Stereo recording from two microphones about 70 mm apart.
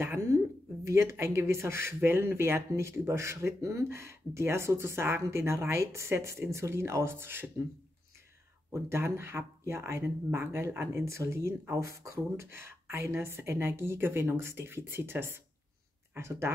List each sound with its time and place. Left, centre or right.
0.0 s speech: right
8.7 s speech: right